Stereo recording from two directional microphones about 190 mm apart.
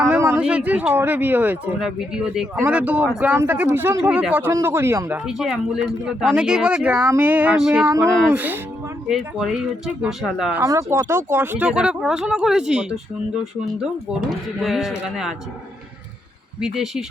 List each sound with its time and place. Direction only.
0.0 s speech: 15° right (ahead or behind)
7.9 s speech: 15° right (ahead or behind)
10.6 s speech: 15° right (ahead or behind)
14.1 s speech: centre (ahead or behind)
16.6 s speech: 5° right (ahead or behind)